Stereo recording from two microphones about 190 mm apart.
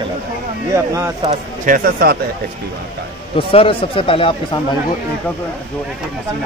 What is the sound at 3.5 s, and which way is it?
Speech, 30° left (ahead or behind).